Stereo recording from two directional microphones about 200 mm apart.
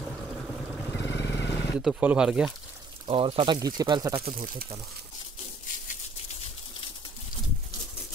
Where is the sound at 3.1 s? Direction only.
25° right (ahead or behind).